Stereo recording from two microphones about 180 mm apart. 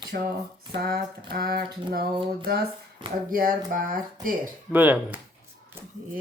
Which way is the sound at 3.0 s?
25° right (ahead or behind).